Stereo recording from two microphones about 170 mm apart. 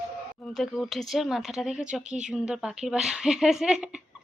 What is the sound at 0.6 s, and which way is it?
Speech, centre (ahead or behind).